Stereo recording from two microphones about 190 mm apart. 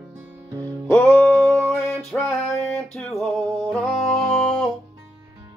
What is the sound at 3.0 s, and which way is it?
Singing, centre (ahead or behind).